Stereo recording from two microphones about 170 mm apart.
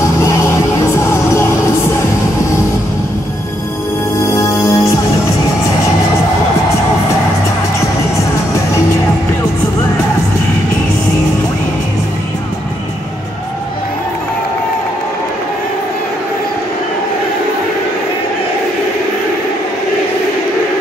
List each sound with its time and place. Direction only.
0.2 s music: 15° left (ahead or behind)
4.2 s music: 15° left (ahead or behind)